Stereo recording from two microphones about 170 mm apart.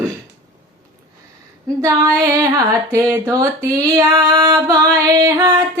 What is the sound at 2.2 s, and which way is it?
Music, 20° right (ahead or behind).